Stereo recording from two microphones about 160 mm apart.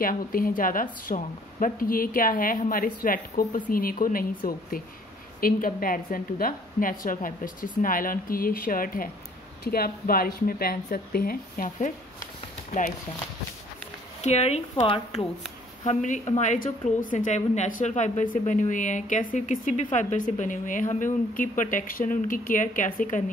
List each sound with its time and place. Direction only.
0.0 s a woman's voice: 65° left (ahead or behind)
14.2 s a woman's voice: 45° left (ahead or behind)